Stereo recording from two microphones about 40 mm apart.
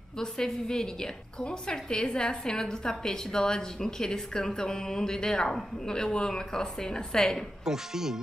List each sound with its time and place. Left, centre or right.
0.2 s a woman's voice: centre
7.6 s speech: centre